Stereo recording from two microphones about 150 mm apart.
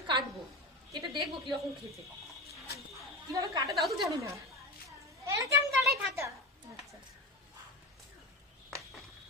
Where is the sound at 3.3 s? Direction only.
25° right (ahead or behind).